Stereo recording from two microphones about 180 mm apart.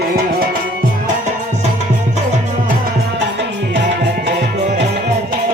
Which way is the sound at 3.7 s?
75° right (ahead or behind).